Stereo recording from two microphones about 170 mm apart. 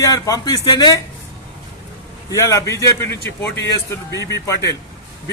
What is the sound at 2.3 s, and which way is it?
A man's voice, 20° left (ahead or behind).